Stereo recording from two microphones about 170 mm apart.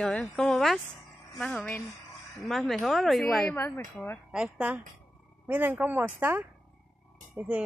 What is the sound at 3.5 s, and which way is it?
Speech, 15° left (ahead or behind).